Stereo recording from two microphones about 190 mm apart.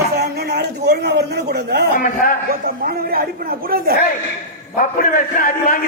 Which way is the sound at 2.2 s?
50° left (ahead or behind).